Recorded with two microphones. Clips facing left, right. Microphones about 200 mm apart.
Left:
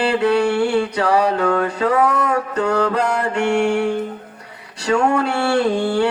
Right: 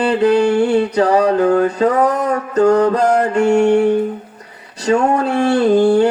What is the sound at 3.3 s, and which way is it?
Music, 35° right (ahead or behind).